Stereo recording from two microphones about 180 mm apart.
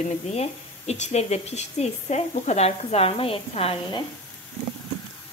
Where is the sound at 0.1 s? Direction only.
35° left (ahead or behind).